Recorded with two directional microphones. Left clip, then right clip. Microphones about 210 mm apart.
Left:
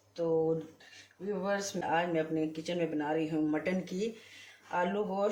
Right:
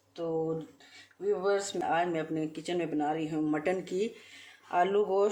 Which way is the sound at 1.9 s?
50° right (ahead or behind).